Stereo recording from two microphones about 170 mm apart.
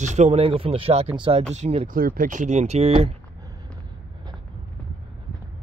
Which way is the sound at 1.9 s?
55° right (ahead or behind).